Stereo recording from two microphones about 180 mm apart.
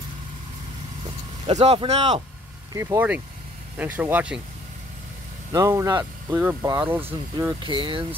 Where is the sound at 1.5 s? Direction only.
35° right (ahead or behind).